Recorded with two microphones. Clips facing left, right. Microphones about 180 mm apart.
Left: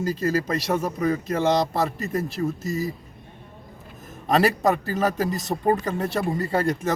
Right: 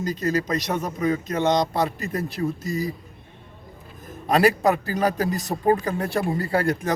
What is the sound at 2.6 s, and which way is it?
Speech, 25° left (ahead or behind).